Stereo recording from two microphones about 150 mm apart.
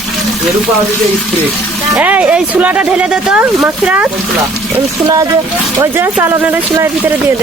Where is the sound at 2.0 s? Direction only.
10° right (ahead or behind).